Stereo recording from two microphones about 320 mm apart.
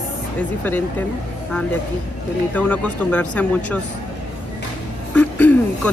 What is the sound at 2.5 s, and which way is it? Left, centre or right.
Speech, centre.